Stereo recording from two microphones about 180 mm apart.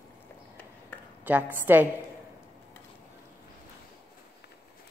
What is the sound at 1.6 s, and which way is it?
Speech, 10° right (ahead or behind).